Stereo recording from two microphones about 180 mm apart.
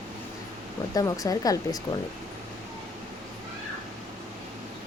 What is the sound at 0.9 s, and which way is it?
Speech, 20° left (ahead or behind).